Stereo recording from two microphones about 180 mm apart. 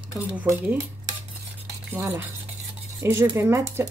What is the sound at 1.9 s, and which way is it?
Speech, 10° right (ahead or behind).